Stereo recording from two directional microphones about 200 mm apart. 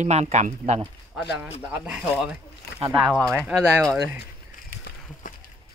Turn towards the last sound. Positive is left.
turn(degrees=5)  # may be behind; listen again after turning